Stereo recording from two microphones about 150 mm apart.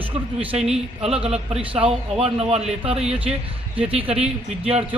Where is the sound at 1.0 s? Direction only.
40° right (ahead or behind).